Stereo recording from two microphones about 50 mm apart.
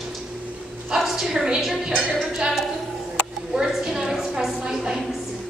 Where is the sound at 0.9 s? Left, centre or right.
Centre.